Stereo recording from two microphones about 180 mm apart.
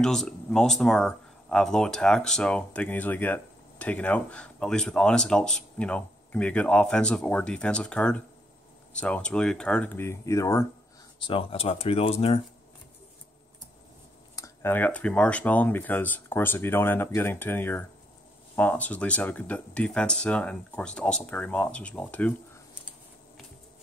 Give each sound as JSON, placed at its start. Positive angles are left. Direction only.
{"t": 0.0, "sound": "speech", "side_deg": 5}
{"t": 11.1, "sound": "speech", "side_deg": 30}
{"t": 14.3, "sound": "speech", "side_deg": 15}